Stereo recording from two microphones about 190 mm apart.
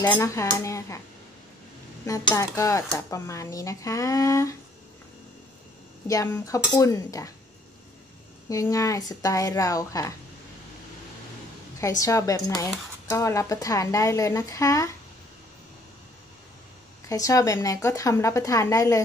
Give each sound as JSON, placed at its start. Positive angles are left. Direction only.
{"t": 0.0, "sound": "a woman's voice", "side_deg": 15}
{"t": 2.0, "sound": "a woman's voice", "side_deg": 15}
{"t": 6.0, "sound": "a woman's voice", "side_deg": 15}
{"t": 8.5, "sound": "a woman's voice", "side_deg": 15}
{"t": 12.0, "sound": "a woman's voice", "side_deg": 15}
{"t": 17.1, "sound": "a woman's voice", "side_deg": 15}